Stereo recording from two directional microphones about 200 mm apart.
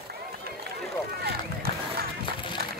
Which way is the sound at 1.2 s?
50° right (ahead or behind).